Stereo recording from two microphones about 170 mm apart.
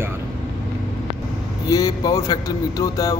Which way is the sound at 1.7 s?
20° left (ahead or behind).